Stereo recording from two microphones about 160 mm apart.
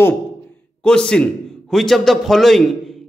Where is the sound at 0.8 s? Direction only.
5° left (ahead or behind).